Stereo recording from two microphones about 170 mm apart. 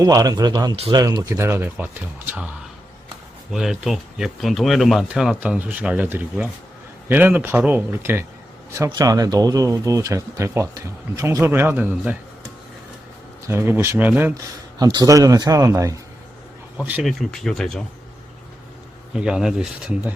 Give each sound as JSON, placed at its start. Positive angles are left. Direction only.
{"t": 0.0, "sound": "speech", "side_deg": -20}
{"t": 3.5, "sound": "speech", "side_deg": 0}
{"t": 13.5, "sound": "speech", "side_deg": -15}
{"t": 16.7, "sound": "speech", "side_deg": -10}
{"t": 17.1, "sound": "speech", "side_deg": 0}
{"t": 19.1, "sound": "speech", "side_deg": -5}